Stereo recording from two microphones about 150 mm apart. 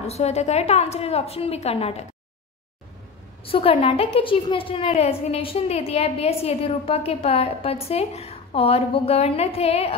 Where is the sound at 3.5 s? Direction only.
40° left (ahead or behind).